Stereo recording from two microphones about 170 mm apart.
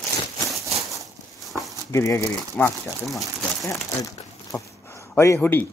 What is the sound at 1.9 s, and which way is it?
Speech, 15° left (ahead or behind).